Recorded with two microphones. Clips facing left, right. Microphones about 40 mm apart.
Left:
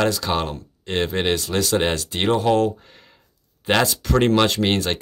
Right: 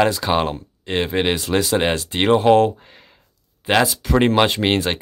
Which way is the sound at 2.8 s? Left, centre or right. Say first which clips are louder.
Right 2 dB; centre.